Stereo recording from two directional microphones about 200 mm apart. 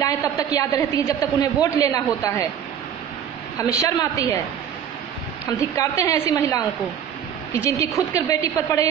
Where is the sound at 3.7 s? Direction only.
15° left (ahead or behind).